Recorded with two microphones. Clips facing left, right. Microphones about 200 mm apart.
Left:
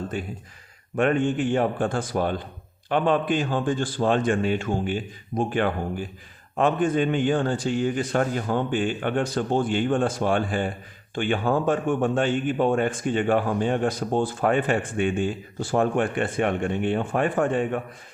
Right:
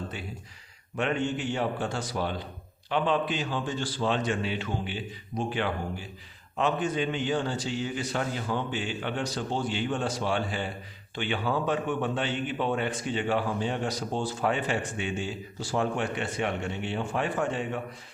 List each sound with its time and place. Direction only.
0.9 s speech: 50° left (ahead or behind)